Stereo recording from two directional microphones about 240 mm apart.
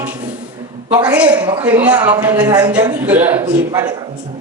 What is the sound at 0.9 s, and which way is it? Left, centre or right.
A woman's voice, centre.